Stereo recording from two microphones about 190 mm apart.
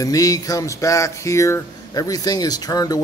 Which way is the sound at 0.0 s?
20° left (ahead or behind).